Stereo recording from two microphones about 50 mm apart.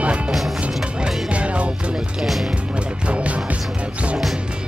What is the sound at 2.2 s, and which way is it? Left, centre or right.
Music, centre.